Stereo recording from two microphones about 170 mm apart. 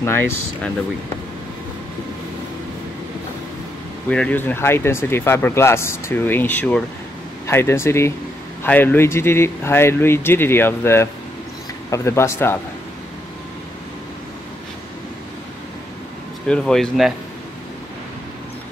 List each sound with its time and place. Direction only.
0.0 s speech: 15° left (ahead or behind)
4.1 s speech: 10° left (ahead or behind)
16.4 s speech: 5° left (ahead or behind)